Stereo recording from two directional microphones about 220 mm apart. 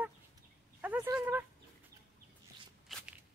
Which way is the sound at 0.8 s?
10° right (ahead or behind).